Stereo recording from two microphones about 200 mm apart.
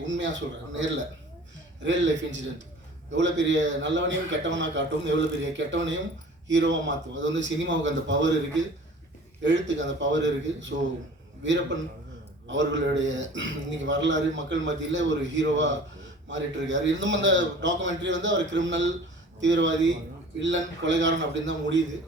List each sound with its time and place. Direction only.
0.1 s a man's voice: 65° right (ahead or behind)